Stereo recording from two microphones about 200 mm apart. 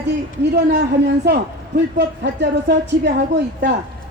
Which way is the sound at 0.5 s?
55° right (ahead or behind).